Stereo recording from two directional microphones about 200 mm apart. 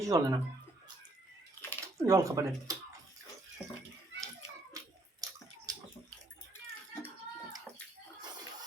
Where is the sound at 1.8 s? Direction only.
15° right (ahead or behind).